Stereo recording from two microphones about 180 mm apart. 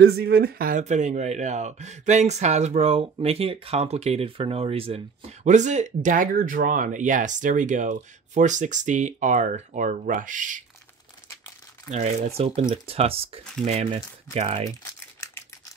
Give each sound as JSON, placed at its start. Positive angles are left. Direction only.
{"t": 0.0, "sound": "speech", "side_deg": -60}
{"t": 11.9, "sound": "speech", "side_deg": -35}
{"t": 14.8, "sound": "typing", "side_deg": 15}